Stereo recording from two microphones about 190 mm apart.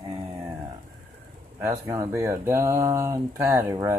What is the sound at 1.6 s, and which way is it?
Speech, 15° right (ahead or behind).